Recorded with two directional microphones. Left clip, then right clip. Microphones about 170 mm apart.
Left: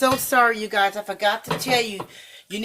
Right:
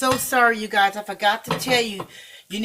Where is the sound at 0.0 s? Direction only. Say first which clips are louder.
Even; 65° left (ahead or behind).